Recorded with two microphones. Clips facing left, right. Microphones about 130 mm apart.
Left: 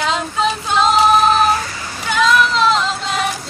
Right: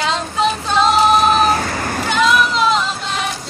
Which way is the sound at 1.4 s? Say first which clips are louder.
Even; 40° right (ahead or behind).